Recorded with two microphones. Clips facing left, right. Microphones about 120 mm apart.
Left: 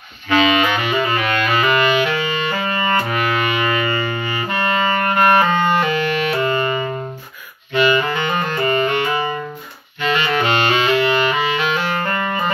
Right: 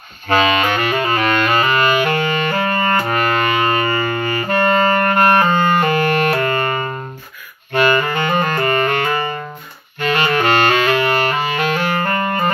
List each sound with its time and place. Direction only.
0.3 s saxophone: 45° right (ahead or behind)